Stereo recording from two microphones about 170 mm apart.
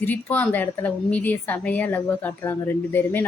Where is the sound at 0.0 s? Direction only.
10° left (ahead or behind).